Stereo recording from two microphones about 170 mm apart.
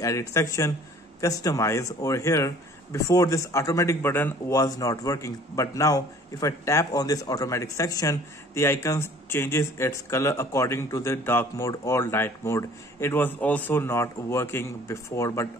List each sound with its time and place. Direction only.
0.0 s speech: 20° left (ahead or behind)